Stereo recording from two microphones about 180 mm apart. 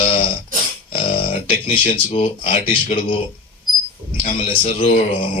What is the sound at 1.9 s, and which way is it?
A man's voice, 35° left (ahead or behind).